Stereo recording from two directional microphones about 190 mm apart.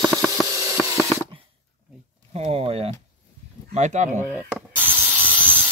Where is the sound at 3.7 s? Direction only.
40° right (ahead or behind).